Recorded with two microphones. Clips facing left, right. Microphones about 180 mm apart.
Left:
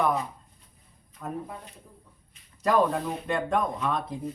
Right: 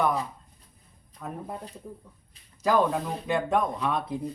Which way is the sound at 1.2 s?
Centre (ahead or behind).